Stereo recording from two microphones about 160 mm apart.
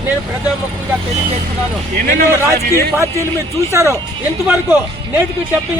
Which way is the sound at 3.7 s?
15° right (ahead or behind).